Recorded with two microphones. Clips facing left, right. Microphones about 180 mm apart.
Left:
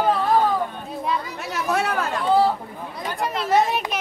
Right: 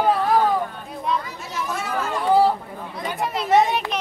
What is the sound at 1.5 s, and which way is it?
Speech, 65° left (ahead or behind).